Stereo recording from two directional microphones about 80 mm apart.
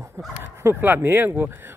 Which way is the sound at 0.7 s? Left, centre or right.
Right.